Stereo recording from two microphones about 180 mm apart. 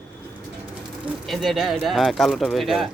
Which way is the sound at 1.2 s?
Centre (ahead or behind).